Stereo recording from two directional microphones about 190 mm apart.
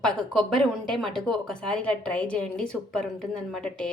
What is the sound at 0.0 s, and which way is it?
A woman's voice, 5° left (ahead or behind).